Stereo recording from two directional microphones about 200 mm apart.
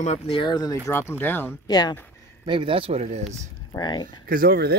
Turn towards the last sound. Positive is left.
turn(degrees=-50)  # may be behind; listen again after turning